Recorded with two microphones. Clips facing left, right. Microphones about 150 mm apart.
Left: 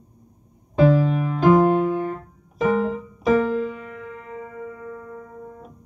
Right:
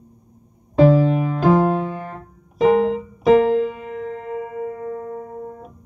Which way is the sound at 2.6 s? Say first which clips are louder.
Right 5 dB; 70° right (ahead or behind).